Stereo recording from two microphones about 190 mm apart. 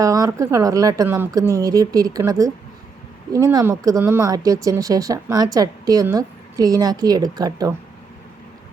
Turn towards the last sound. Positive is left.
turn(degrees=-20)  # may be behind; listen again after turning